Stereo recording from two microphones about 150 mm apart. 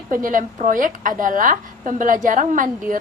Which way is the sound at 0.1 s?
65° right (ahead or behind).